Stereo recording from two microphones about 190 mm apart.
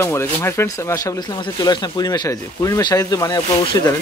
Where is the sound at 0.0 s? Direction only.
15° left (ahead or behind).